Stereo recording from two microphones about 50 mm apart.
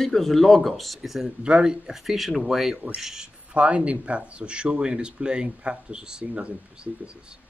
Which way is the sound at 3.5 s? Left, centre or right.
Right.